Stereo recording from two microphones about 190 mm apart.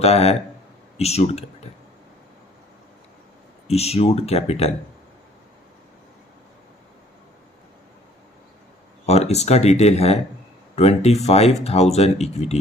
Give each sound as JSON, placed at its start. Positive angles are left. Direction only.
{"t": 0.0, "sound": "speech", "side_deg": 35}
{"t": 3.7, "sound": "speech", "side_deg": 35}
{"t": 9.0, "sound": "speech", "side_deg": 35}